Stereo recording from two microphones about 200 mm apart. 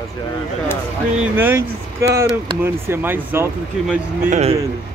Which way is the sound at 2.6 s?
10° right (ahead or behind).